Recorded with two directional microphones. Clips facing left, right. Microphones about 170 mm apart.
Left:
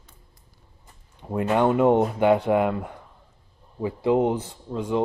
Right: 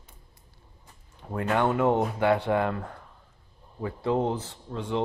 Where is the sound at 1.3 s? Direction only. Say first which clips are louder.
Left 4 dB; 20° left (ahead or behind).